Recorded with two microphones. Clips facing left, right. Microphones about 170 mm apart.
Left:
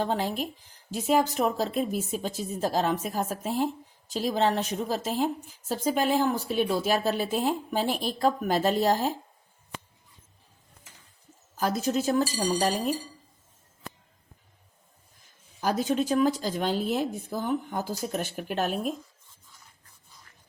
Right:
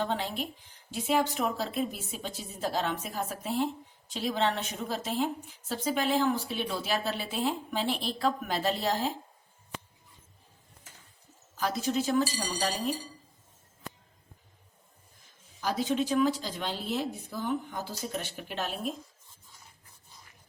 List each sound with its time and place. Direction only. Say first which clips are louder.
0.0 s a woman's voice: left 4 dB; 45° left (ahead or behind)
11.5 s a woman's voice: left 3 dB; 45° left (ahead or behind)
15.6 s a woman's voice: left 3 dB; 45° left (ahead or behind)